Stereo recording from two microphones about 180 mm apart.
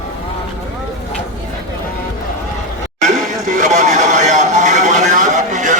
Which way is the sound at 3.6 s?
45° right (ahead or behind).